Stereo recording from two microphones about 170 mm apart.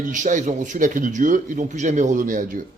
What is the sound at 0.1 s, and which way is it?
A man's voice, 45° right (ahead or behind).